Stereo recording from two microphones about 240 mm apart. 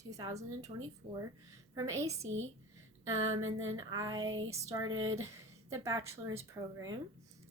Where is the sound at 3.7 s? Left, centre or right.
Centre.